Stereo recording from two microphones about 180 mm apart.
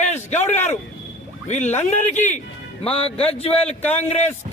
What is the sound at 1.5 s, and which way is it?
A man's voice, 40° left (ahead or behind).